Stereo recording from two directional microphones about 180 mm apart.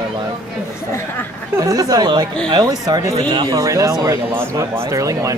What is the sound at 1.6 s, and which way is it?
Speech, 20° right (ahead or behind).